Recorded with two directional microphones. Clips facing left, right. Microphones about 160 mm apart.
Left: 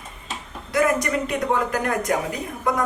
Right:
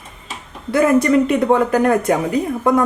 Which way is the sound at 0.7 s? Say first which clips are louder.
Right 8 dB; 30° right (ahead or behind).